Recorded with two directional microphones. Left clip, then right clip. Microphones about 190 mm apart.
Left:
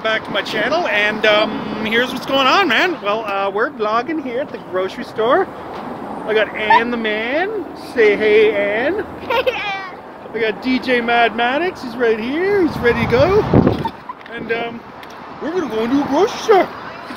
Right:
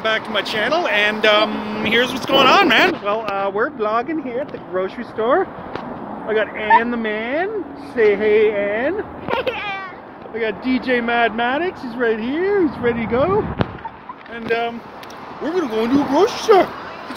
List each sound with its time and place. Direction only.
0.0 s speech: 5° right (ahead or behind)
4.7 s speech: 20° right (ahead or behind)
9.3 s speech: 15° left (ahead or behind)
10.6 s speech: 35° right (ahead or behind)
14.5 s speech: 25° right (ahead or behind)
15.4 s speech: 5° right (ahead or behind)